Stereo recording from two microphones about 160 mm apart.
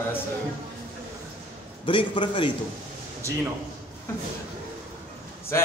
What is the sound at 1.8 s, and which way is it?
Speech, 30° left (ahead or behind).